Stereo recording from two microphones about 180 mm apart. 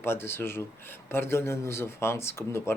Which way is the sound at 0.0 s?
15° left (ahead or behind).